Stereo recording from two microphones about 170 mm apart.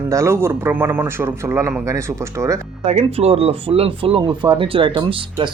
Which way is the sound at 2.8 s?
40° right (ahead or behind).